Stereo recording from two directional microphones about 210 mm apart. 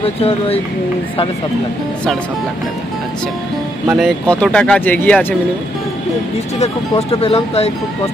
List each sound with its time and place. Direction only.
0.0 s speech: 30° left (ahead or behind)
3.9 s speech: centre (ahead or behind)
6.6 s speech: 30° left (ahead or behind)